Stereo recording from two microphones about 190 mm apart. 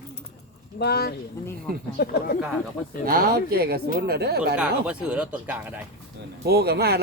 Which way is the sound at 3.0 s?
55° right (ahead or behind).